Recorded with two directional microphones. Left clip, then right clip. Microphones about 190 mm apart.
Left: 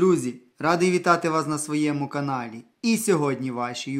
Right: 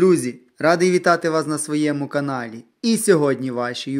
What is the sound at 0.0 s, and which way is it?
Speech, 15° right (ahead or behind).